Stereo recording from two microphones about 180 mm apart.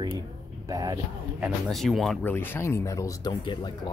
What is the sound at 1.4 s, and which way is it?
Speech, centre (ahead or behind).